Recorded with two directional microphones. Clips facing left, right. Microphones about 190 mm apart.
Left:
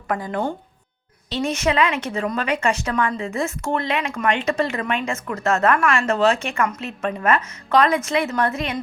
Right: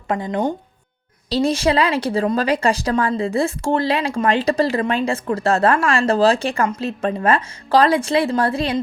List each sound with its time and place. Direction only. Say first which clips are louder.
0.1 s speech: right 3 dB; 20° right (ahead or behind)
1.3 s a woman's voice: right 4 dB; 35° right (ahead or behind)